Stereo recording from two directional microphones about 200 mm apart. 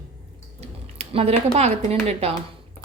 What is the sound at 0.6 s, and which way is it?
A woman's voice, 30° right (ahead or behind).